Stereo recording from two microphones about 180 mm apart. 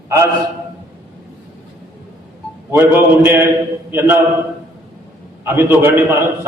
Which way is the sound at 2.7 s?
15° right (ahead or behind).